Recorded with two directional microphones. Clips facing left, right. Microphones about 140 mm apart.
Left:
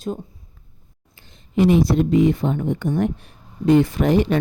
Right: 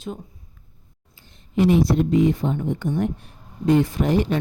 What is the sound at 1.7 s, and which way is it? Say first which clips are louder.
Speech: left 2 dB; 90° left.